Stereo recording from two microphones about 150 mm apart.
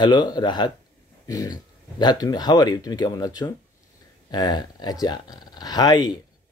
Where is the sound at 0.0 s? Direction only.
30° left (ahead or behind).